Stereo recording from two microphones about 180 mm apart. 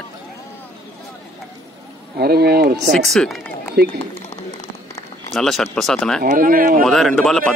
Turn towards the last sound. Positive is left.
turn(degrees=5)  # may be behind; listen again after turning